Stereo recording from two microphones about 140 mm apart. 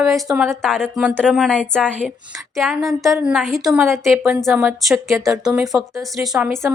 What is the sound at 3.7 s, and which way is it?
A woman's voice, 15° right (ahead or behind).